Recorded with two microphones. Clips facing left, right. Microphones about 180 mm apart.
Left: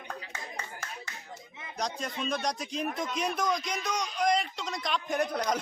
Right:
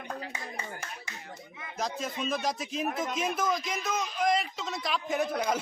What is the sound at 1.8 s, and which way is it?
A man's voice, 5° right (ahead or behind).